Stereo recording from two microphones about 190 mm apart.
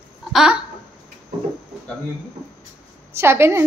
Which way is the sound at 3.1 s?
15° right (ahead or behind).